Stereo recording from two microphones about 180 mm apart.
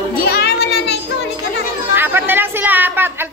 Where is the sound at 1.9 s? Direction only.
10° right (ahead or behind).